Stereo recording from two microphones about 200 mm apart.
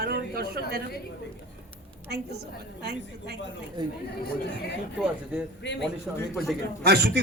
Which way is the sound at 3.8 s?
20° right (ahead or behind).